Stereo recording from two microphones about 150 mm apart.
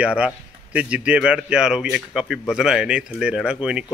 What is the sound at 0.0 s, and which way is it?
A man's voice, 5° right (ahead or behind).